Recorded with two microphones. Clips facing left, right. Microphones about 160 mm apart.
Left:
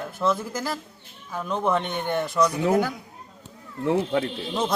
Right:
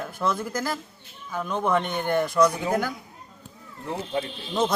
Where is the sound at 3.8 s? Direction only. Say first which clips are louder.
Left 7 dB; 70° left (ahead or behind).